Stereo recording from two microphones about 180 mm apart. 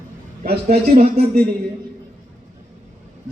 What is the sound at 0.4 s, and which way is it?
Speech, 60° right (ahead or behind).